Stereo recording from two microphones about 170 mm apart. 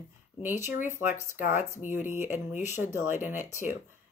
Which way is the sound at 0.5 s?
45° left (ahead or behind).